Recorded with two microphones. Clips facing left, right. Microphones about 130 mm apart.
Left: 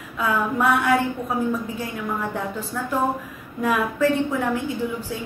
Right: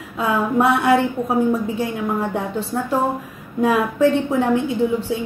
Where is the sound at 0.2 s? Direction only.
25° right (ahead or behind).